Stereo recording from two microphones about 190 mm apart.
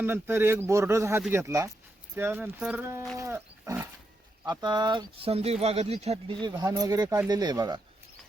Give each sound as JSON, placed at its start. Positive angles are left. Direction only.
{"t": 0.0, "sound": "speech", "side_deg": -10}
{"t": 3.2, "sound": "wild animals", "side_deg": -15}
{"t": 4.4, "sound": "speech", "side_deg": -25}
{"t": 6.4, "sound": "speech", "side_deg": -20}